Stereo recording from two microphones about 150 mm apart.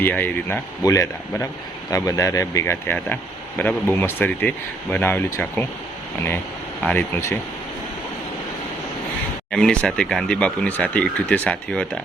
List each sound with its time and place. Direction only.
0.0 s speech: 10° left (ahead or behind)
9.5 s speech: 5° left (ahead or behind)